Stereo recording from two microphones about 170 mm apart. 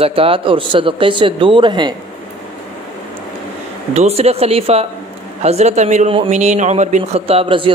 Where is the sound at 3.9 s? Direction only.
40° right (ahead or behind).